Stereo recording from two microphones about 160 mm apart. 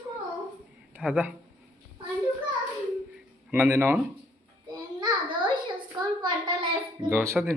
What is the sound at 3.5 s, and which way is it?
Speech, 15° right (ahead or behind).